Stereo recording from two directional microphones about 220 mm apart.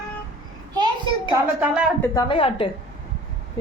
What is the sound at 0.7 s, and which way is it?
Speech, 20° right (ahead or behind).